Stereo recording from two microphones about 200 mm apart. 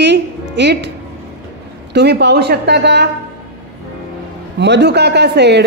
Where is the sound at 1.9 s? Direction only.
60° right (ahead or behind).